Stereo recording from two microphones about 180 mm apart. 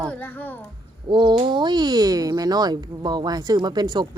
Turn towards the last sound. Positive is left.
turn(degrees=-25)  # may be behind; listen again after turning